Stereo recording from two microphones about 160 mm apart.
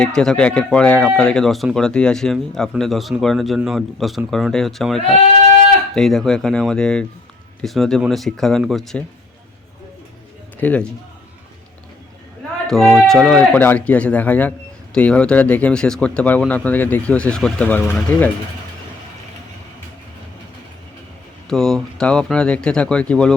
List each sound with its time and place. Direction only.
0.0 s speech: 5° left (ahead or behind)
4.9 s speech: 35° left (ahead or behind)
5.5 s speech: 5° left (ahead or behind)
10.6 s a man's voice: 10° left (ahead or behind)
12.6 s speech: centre (ahead or behind)
21.5 s speech: 5° left (ahead or behind)